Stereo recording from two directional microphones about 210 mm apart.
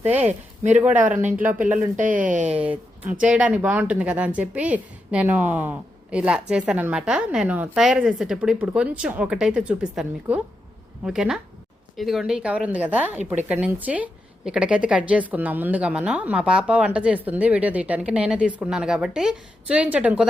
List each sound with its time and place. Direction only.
0.0 s a woman's voice: 10° right (ahead or behind)
1.0 s speech: 40° right (ahead or behind)
2.5 s a woman's voice: 5° right (ahead or behind)